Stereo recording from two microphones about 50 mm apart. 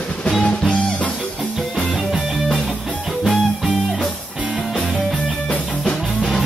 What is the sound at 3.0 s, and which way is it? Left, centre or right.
Music, centre.